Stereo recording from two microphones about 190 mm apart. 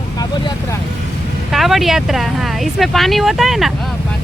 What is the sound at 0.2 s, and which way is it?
Vehicle, 20° left (ahead or behind).